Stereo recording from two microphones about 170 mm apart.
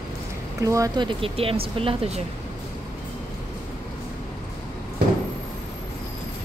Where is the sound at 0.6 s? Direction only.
20° right (ahead or behind); by 2.2 s 35° right (ahead or behind).